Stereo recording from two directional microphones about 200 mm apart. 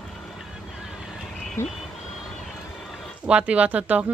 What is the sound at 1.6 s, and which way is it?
Vehicle, 15° left (ahead or behind).